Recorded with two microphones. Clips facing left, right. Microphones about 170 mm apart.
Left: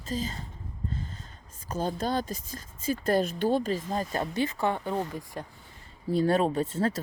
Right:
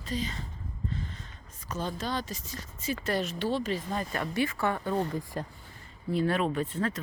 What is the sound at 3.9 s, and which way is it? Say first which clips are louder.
Speech: left 3 dB; 35° left (ahead or behind).